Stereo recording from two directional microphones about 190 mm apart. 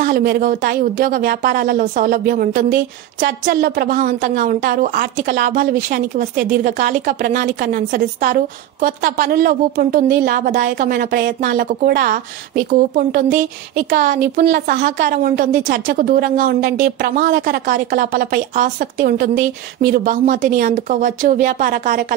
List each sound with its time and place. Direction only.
0.0 s a woman's voice: 50° right (ahead or behind)